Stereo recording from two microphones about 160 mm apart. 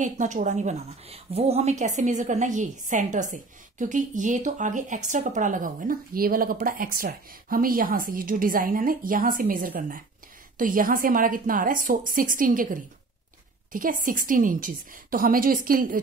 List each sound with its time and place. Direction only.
0.0 s a woman's voice: 50° right (ahead or behind)
13.7 s a woman's voice: 60° right (ahead or behind)